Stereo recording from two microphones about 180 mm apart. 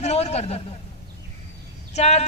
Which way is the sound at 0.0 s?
35° left (ahead or behind).